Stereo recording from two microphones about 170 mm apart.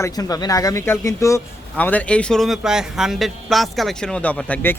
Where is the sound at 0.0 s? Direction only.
20° left (ahead or behind).